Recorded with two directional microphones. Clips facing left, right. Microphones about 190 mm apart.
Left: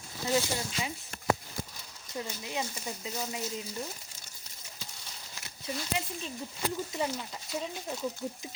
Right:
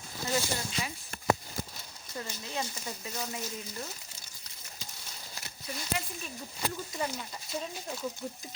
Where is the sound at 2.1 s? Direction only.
15° left (ahead or behind).